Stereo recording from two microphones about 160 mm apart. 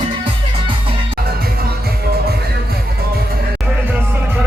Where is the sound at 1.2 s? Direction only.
75° right (ahead or behind).